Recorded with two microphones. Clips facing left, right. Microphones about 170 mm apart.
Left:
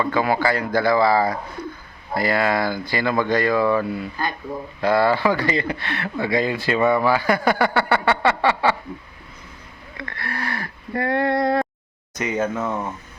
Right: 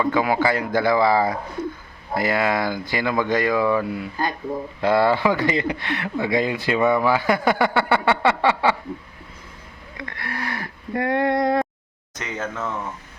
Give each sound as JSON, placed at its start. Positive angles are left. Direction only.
{"t": 0.0, "sound": "speech", "side_deg": -15}
{"t": 4.8, "sound": "speech", "side_deg": -25}
{"t": 10.0, "sound": "a sound", "side_deg": -15}
{"t": 12.1, "sound": "speech", "side_deg": 10}